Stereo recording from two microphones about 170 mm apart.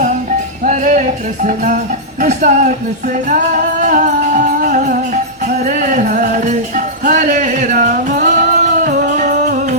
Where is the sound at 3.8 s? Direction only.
50° right (ahead or behind).